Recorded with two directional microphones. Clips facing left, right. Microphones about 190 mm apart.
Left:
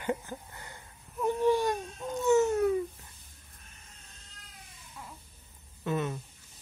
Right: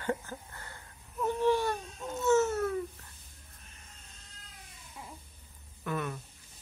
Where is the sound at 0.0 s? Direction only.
15° left (ahead or behind).